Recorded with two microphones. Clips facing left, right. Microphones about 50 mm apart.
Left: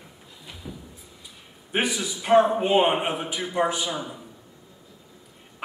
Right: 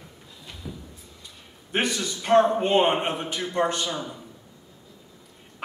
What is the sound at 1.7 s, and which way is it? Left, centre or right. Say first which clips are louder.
A man's voice: even; centre.